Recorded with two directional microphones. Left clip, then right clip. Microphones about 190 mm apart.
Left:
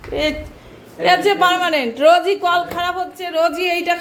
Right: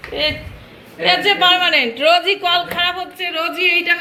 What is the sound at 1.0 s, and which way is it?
A woman's voice, 25° left (ahead or behind).